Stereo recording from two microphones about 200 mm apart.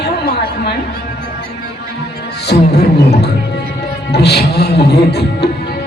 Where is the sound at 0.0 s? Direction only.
55° left (ahead or behind).